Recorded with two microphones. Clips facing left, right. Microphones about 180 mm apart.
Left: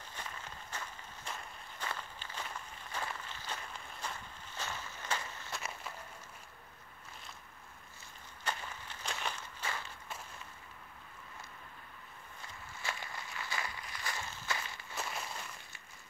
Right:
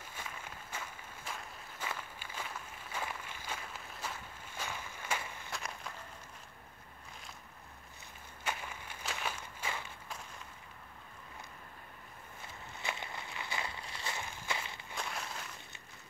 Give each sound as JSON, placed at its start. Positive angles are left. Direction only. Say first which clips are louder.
{"t": 0.0, "sound": "walk", "louder": "even", "side_deg": -10}
{"t": 5.5, "sound": "a sound", "louder": "left 1 dB", "side_deg": 5}
{"t": 8.5, "sound": "walk", "louder": "even", "side_deg": -10}
{"t": 12.8, "sound": "walk", "louder": "right 1 dB", "side_deg": -20}
{"t": 15.0, "sound": "walk", "louder": "even", "side_deg": 5}